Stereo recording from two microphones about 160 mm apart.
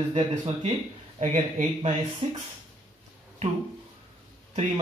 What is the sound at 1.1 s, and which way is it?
Speech, 45° right (ahead or behind).